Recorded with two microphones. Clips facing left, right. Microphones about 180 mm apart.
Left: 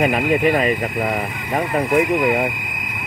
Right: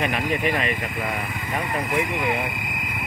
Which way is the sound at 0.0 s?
40° left (ahead or behind).